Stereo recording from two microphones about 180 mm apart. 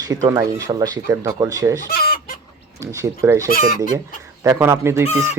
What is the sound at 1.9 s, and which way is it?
Chicken, 55° left (ahead or behind).